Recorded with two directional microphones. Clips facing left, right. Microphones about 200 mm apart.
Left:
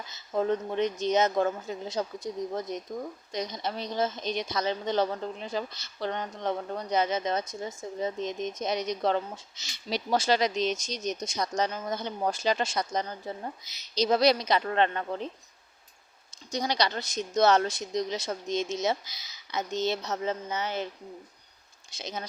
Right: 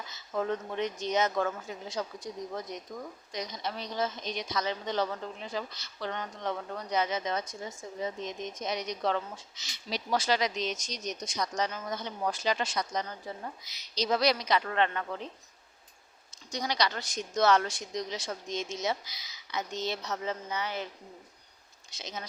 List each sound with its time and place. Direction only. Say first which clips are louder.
0.3 s a woman's voice: left 4 dB; 25° left (ahead or behind)
16.5 s a woman's voice: left 3 dB; 25° left (ahead or behind)
21.9 s speech: left 4 dB; 30° left (ahead or behind)